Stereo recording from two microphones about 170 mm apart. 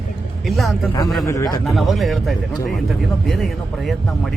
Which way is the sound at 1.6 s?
Centre (ahead or behind).